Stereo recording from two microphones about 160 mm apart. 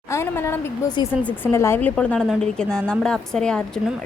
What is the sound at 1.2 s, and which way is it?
A woman's voice, 15° left (ahead or behind).